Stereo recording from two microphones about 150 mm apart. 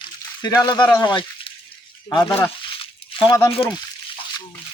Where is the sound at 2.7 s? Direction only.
35° left (ahead or behind).